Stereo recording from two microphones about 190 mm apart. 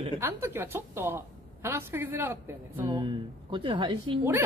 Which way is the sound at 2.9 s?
25° right (ahead or behind).